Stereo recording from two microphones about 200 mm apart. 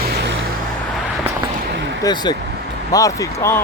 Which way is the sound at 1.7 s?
60° right (ahead or behind).